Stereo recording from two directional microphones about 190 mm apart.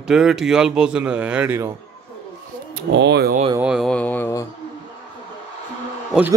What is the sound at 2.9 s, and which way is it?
Speech, 65° right (ahead or behind).